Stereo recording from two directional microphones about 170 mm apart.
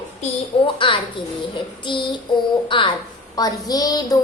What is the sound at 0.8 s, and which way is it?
Speech, 30° left (ahead or behind).